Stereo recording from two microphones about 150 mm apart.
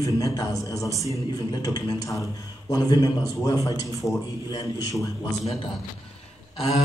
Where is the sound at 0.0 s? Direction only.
20° left (ahead or behind).